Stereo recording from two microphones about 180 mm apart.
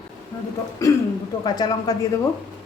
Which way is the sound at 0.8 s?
20° left (ahead or behind).